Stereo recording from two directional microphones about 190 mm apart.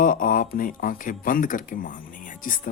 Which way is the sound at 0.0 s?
45° left (ahead or behind).